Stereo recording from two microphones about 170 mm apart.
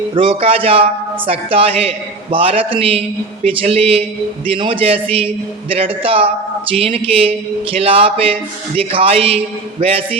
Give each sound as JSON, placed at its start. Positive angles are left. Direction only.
{"t": 0.1, "sound": "speech", "side_deg": -30}